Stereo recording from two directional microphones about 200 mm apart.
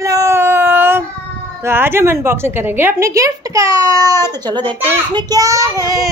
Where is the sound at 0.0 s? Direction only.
15° right (ahead or behind).